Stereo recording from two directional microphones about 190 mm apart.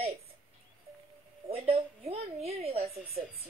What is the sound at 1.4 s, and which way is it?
A woman's voice, 30° right (ahead or behind).